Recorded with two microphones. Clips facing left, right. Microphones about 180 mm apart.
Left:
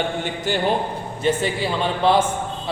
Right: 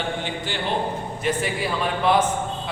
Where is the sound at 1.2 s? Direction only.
30° left (ahead or behind).